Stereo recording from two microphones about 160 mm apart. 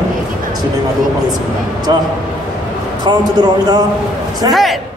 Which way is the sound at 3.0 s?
25° right (ahead or behind).